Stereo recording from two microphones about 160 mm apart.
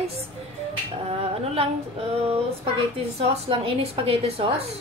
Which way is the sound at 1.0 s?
40° right (ahead or behind).